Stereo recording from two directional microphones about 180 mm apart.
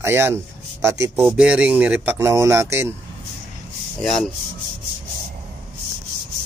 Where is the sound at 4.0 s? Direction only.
Centre (ahead or behind).